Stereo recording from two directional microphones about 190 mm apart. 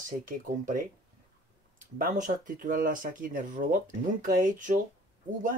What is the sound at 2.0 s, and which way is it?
Speech, 45° right (ahead or behind).